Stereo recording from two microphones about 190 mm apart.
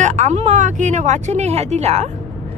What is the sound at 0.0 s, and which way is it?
A woman's voice, 35° right (ahead or behind).